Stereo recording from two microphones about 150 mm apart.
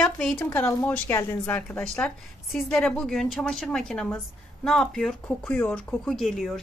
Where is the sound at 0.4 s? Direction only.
15° left (ahead or behind).